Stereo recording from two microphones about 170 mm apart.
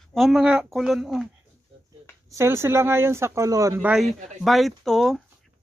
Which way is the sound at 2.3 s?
15° right (ahead or behind).